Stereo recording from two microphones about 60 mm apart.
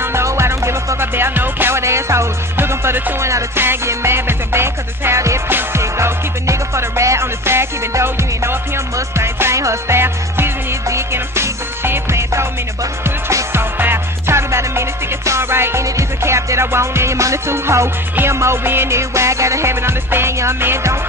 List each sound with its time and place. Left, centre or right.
0.0 s music: right
1.8 s music: right
3.2 s music: right
3.5 s music: right
5.5 s music: right
5.8 s music: right
10.9 s music: right
13.5 s music: right